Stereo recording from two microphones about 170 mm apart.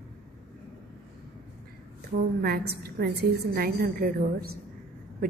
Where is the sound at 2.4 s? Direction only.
65° right (ahead or behind).